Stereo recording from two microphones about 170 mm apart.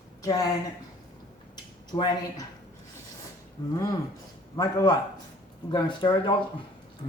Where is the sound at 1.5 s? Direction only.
25° left (ahead or behind).